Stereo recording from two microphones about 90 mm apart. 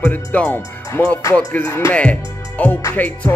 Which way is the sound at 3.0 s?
20° left (ahead or behind).